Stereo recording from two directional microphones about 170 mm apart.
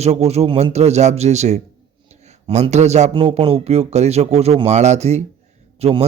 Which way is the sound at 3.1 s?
35° right (ahead or behind).